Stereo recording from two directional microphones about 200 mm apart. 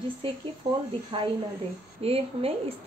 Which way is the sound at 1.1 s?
25° right (ahead or behind).